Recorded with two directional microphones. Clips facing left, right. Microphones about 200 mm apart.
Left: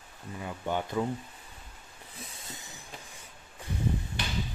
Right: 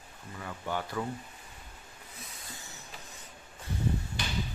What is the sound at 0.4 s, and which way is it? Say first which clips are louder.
Speech: left 3 dB; 20° left (ahead or behind).